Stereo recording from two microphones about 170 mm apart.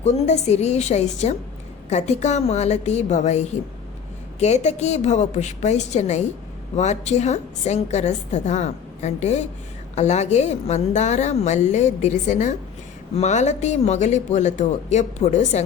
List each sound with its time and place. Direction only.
0.0 s a woman's voice: 40° left (ahead or behind)